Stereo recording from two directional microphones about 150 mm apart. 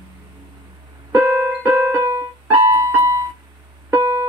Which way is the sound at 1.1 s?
10° right (ahead or behind).